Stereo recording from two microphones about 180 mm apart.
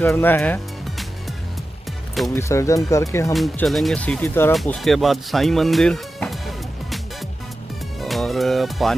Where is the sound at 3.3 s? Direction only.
Centre (ahead or behind).